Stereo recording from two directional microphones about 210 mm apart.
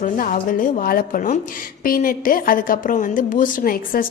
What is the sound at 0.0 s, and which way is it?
A woman's voice, 40° left (ahead or behind).